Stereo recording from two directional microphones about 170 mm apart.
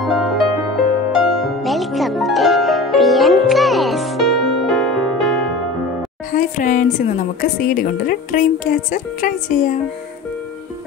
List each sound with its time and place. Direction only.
0.0 s music: centre (ahead or behind)
6.3 s a sound: 50° left (ahead or behind)
7.5 s a woman's voice: 55° left (ahead or behind)